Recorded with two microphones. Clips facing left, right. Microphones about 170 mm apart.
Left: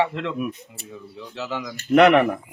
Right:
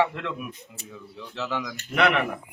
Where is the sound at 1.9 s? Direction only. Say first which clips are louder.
Left 9 dB; 45° left (ahead or behind).